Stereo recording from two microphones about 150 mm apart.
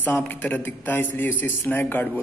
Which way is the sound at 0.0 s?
10° left (ahead or behind).